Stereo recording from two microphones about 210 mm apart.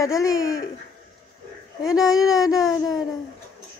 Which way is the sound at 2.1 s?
15° left (ahead or behind).